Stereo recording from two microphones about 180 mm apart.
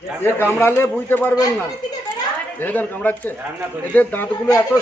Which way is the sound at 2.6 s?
10° left (ahead or behind).